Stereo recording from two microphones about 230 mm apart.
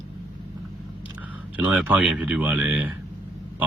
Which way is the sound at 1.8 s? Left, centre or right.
Centre.